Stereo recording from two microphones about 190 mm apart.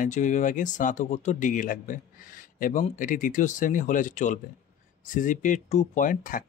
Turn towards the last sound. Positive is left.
turn(degrees=45)  # may be behind; listen again after turning